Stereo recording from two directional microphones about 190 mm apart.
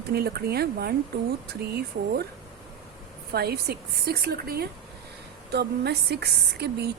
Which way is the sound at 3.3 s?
55° right (ahead or behind).